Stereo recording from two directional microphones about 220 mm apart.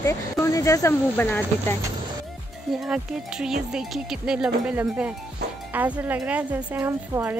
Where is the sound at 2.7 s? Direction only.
Centre (ahead or behind).